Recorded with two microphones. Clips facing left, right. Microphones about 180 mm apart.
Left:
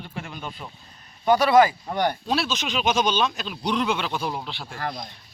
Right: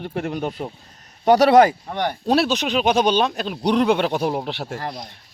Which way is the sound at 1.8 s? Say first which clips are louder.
Even; centre (ahead or behind).